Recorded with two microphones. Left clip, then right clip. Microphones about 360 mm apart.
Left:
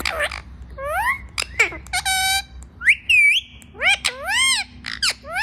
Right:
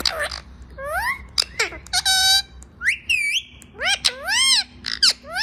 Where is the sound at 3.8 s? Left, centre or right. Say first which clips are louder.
Left 2 dB; left.